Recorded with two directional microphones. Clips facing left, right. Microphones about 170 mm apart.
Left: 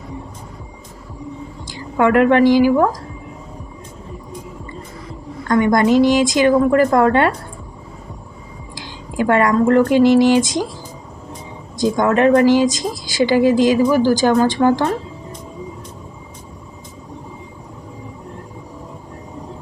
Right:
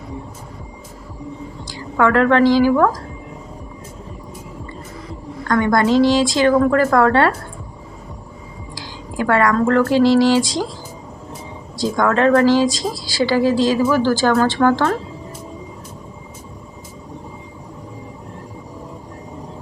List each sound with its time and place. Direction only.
1.6 s a woman's voice: 20° left (ahead or behind)
5.5 s speech: 15° left (ahead or behind)
8.7 s speech: 20° left (ahead or behind)
11.8 s speech: 20° left (ahead or behind)